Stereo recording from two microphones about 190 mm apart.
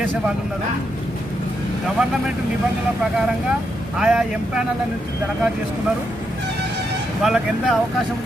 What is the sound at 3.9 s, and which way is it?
Speech, 5° right (ahead or behind).